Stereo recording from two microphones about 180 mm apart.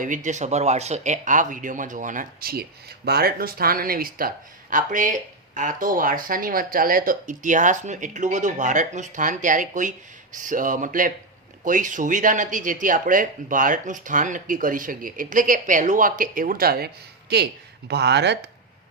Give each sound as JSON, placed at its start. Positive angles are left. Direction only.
{"t": 0.0, "sound": "speech", "side_deg": -45}